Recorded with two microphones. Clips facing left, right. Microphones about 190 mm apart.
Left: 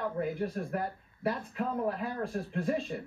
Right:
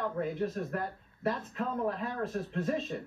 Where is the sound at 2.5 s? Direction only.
Centre (ahead or behind).